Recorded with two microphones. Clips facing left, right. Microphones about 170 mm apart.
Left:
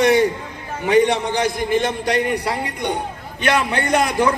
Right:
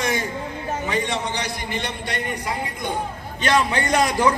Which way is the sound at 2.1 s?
70° left (ahead or behind).